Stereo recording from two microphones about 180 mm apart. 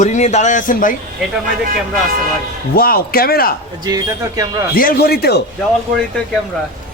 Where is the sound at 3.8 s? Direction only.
20° right (ahead or behind).